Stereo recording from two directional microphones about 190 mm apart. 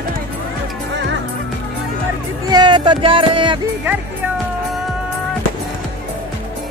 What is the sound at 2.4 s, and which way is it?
Music, 20° right (ahead or behind).